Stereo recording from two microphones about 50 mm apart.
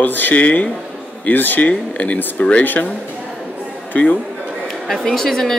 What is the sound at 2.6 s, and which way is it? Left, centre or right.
Speech, left.